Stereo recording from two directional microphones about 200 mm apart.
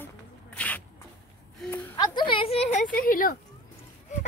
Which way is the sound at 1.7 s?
20° left (ahead or behind).